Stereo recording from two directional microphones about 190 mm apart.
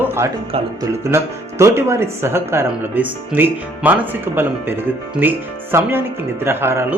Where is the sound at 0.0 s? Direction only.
15° right (ahead or behind).